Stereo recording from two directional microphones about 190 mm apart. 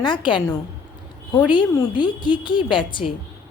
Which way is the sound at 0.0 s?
25° left (ahead or behind).